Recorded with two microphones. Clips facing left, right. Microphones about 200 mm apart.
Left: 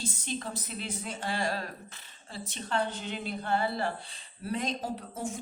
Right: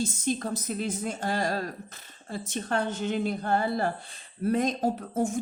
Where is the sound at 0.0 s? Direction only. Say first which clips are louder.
Right 7 dB; 45° right (ahead or behind).